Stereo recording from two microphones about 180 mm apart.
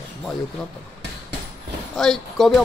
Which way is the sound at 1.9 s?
Centre (ahead or behind).